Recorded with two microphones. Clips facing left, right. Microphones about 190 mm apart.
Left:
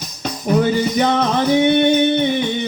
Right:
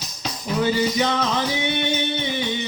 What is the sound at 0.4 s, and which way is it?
Music, 50° left (ahead or behind).